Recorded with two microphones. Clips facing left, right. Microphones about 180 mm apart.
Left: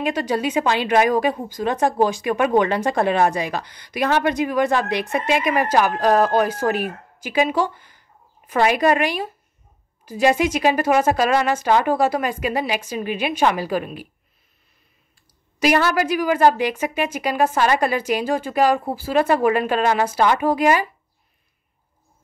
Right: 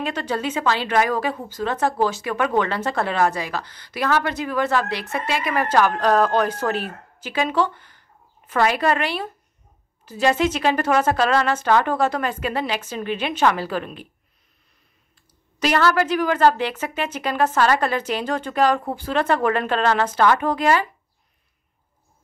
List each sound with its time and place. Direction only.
0.0 s a woman's voice: 10° left (ahead or behind)
15.6 s a woman's voice: 15° left (ahead or behind)